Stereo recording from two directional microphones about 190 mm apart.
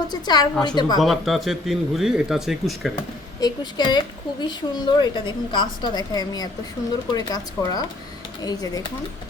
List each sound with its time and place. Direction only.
0.1 s a woman's voice: 20° left (ahead or behind)
0.9 s speech: centre (ahead or behind)
3.4 s a woman's voice: 20° left (ahead or behind)